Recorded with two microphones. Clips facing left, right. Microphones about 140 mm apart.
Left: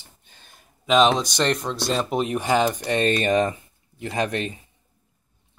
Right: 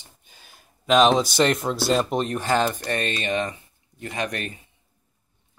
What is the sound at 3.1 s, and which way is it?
Speech, 40° left (ahead or behind).